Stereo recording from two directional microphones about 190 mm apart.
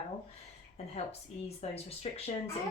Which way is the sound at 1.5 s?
35° left (ahead or behind).